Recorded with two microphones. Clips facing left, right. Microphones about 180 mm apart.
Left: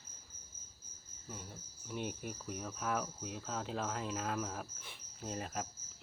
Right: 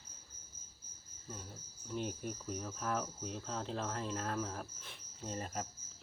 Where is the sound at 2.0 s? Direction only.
40° right (ahead or behind).